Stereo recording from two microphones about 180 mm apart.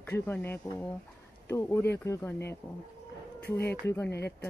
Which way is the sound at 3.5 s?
10° left (ahead or behind).